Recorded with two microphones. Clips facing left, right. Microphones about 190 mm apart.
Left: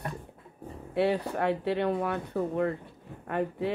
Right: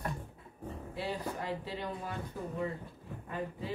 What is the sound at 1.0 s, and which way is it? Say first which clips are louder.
Speech: left 11 dB; 65° left (ahead or behind).